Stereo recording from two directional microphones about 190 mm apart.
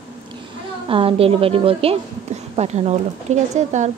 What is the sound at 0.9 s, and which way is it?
A woman's voice, 30° right (ahead or behind).